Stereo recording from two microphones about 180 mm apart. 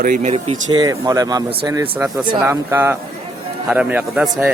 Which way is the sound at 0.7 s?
20° right (ahead or behind).